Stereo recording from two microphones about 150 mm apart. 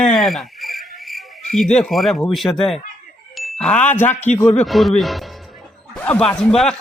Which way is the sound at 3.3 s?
Centre (ahead or behind).